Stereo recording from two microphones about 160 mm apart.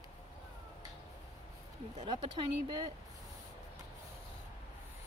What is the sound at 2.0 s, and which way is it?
Speech, 40° right (ahead or behind).